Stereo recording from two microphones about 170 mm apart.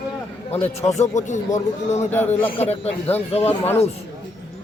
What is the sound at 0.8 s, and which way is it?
Speech, 40° left (ahead or behind).